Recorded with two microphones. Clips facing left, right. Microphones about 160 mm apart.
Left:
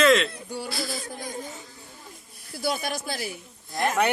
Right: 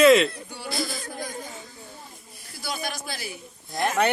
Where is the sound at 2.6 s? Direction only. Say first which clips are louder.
Left 4 dB; 55° left (ahead or behind).